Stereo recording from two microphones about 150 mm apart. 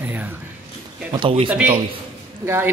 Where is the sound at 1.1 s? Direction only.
35° right (ahead or behind).